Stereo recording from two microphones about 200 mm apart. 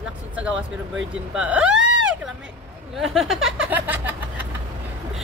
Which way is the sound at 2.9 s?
Centre (ahead or behind).